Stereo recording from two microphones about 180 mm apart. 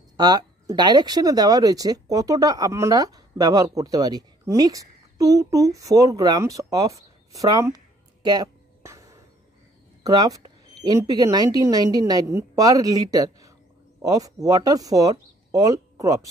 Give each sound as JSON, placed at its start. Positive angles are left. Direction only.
{"t": 0.2, "sound": "speech", "side_deg": -20}
{"t": 7.0, "sound": "a sound", "side_deg": -20}
{"t": 10.0, "sound": "speech", "side_deg": -20}